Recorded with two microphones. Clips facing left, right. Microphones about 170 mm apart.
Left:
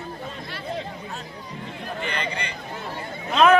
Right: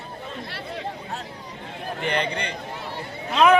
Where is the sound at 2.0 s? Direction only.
60° right (ahead or behind).